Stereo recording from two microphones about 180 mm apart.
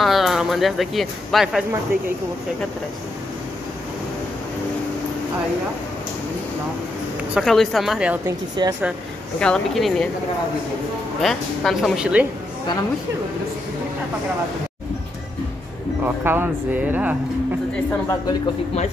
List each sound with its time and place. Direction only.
0.0 s speech: centre (ahead or behind)
7.3 s a woman's voice: centre (ahead or behind)
8.6 s speech: 25° right (ahead or behind)
9.4 s a woman's voice: 5° left (ahead or behind)
11.1 s a woman's voice: centre (ahead or behind)
16.0 s speech: 10° right (ahead or behind)